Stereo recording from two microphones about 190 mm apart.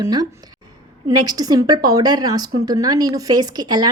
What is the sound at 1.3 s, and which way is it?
Speech, 20° right (ahead or behind).